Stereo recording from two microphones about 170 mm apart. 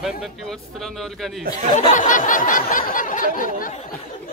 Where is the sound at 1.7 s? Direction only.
50° left (ahead or behind).